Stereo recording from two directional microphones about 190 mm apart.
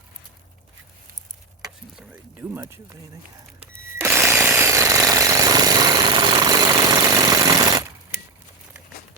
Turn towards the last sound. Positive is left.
turn(degrees=-20)  # may be behind; listen again after turning